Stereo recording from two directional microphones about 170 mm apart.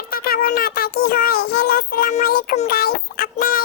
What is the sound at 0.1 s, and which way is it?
Child singing, 60° left (ahead or behind).